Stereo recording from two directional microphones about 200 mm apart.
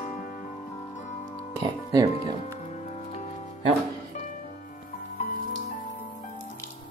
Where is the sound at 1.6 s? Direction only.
20° right (ahead or behind).